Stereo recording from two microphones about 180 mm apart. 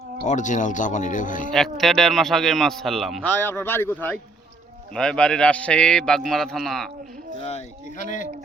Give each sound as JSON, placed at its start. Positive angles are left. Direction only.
{"t": 0.3, "sound": "speech", "side_deg": 45}
{"t": 1.5, "sound": "a man's voice", "side_deg": 0}
{"t": 3.2, "sound": "a man's voice", "side_deg": 10}
{"t": 7.4, "sound": "speech", "side_deg": 40}